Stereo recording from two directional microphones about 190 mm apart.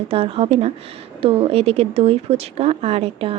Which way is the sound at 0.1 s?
30° right (ahead or behind).